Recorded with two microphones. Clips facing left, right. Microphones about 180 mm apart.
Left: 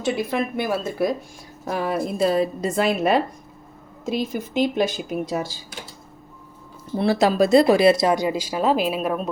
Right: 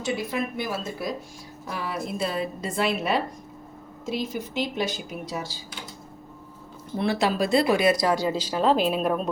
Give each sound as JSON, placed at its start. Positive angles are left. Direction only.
{"t": 0.0, "sound": "speech", "side_deg": 60}
{"t": 1.6, "sound": "a woman's voice", "side_deg": 45}
{"t": 6.9, "sound": "speech", "side_deg": 35}